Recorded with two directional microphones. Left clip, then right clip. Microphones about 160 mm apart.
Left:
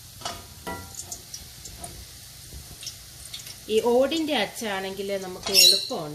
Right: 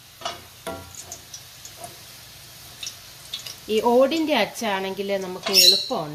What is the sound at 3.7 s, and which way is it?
Speech, 60° right (ahead or behind).